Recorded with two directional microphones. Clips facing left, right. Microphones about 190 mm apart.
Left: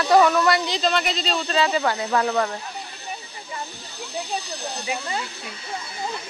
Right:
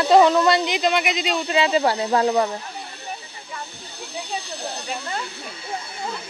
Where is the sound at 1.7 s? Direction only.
25° right (ahead or behind).